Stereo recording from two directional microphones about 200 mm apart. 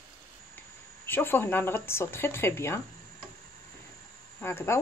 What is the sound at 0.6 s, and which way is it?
Speech, 10° left (ahead or behind).